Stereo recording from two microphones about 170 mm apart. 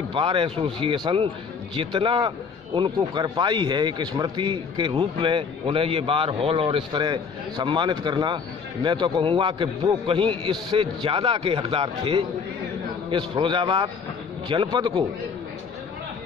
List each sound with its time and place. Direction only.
0.1 s a man's voice: 30° right (ahead or behind)